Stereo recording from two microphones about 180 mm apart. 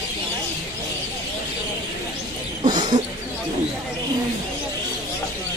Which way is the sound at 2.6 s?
25° right (ahead or behind).